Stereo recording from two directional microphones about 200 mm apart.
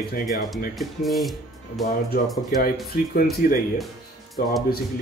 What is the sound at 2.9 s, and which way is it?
Speech, 45° left (ahead or behind).